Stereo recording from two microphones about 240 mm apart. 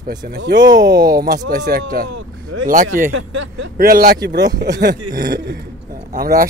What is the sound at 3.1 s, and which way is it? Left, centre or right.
Speech, right.